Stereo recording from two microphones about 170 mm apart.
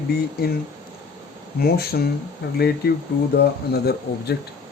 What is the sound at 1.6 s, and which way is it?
Speech, 65° left (ahead or behind).